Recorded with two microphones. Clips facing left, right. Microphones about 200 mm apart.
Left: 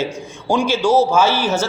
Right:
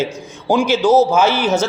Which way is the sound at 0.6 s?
15° left (ahead or behind).